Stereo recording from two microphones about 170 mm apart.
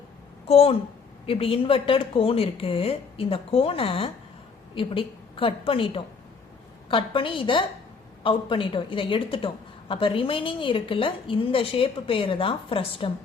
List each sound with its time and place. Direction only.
0.4 s a woman's voice: 35° left (ahead or behind)